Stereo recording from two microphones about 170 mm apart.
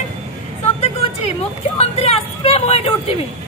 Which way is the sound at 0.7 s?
40° left (ahead or behind).